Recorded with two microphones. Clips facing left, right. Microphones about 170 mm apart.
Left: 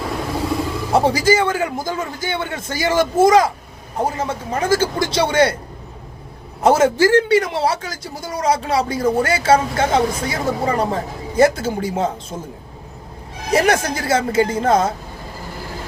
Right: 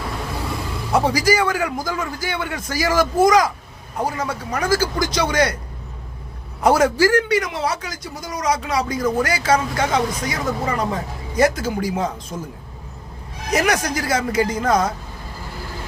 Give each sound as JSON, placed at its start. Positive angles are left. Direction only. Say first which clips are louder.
{"t": 0.9, "sound": "a man's voice", "louder": "left 2 dB", "side_deg": 25}
{"t": 6.6, "sound": "a man's voice", "louder": "left 2 dB", "side_deg": 25}
{"t": 13.5, "sound": "a man's voice", "louder": "left 3 dB", "side_deg": 30}